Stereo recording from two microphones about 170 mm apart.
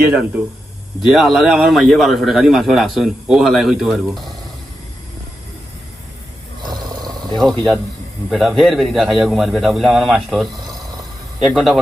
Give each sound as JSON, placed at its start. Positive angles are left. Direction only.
{"t": 1.0, "sound": "a man's voice", "side_deg": 0}
{"t": 6.6, "sound": "roar", "side_deg": -25}
{"t": 7.3, "sound": "a man's voice", "side_deg": 0}